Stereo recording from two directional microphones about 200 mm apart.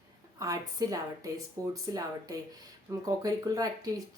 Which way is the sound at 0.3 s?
15° right (ahead or behind).